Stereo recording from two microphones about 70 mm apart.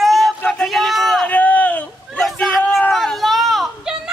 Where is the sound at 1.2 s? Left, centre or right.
Left.